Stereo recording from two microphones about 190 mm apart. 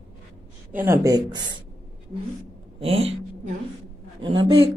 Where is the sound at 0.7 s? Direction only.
15° right (ahead or behind).